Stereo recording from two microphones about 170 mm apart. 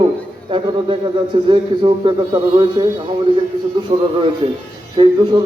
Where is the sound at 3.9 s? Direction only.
40° right (ahead or behind).